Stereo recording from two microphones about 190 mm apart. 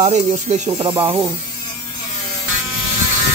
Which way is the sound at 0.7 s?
25° right (ahead or behind).